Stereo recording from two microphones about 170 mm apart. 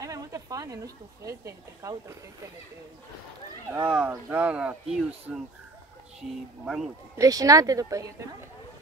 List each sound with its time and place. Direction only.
0.0 s a sound: 20° right (ahead or behind)
1.2 s speech: 20° right (ahead or behind)
3.7 s speech: 10° right (ahead or behind)
6.6 s speech: centre (ahead or behind)
7.2 s a woman's voice: 20° right (ahead or behind)